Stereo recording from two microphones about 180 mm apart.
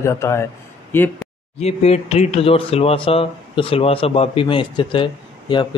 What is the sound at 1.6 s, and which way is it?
Speech, 35° left (ahead or behind).